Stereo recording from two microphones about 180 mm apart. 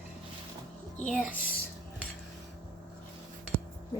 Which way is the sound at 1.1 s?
Centre (ahead or behind).